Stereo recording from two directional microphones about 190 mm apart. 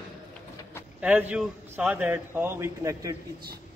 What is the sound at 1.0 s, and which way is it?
A man's voice, 5° right (ahead or behind).